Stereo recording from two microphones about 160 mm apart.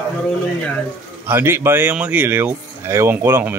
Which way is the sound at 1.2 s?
15° right (ahead or behind).